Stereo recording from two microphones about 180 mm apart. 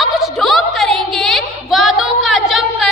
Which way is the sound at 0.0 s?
Centre (ahead or behind).